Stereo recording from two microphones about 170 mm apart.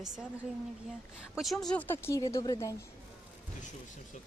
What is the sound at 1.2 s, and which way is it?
Speech, centre (ahead or behind).